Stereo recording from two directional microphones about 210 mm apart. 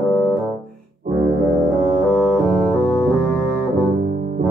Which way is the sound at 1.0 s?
40° right (ahead or behind).